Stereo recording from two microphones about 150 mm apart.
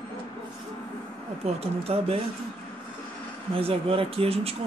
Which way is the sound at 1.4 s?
40° right (ahead or behind).